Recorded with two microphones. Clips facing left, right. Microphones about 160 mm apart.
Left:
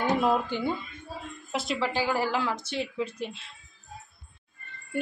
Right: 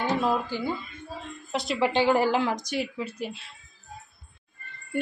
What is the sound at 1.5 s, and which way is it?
Speech, centre (ahead or behind).